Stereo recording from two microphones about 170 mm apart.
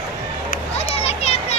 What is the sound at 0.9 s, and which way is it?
Children playing, 35° left (ahead or behind).